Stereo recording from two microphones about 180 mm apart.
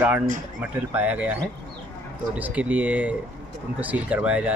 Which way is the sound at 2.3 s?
10° right (ahead or behind).